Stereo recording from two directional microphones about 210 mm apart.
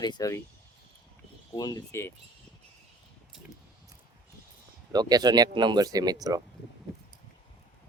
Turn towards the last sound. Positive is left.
turn(degrees=-15)  # may be behind; listen again after turning